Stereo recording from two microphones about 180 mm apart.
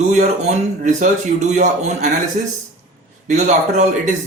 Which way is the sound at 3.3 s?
40° right (ahead or behind).